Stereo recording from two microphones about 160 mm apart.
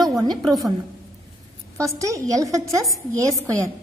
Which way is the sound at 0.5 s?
20° right (ahead or behind).